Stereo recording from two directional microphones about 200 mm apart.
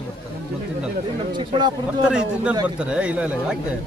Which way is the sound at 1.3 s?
20° right (ahead or behind).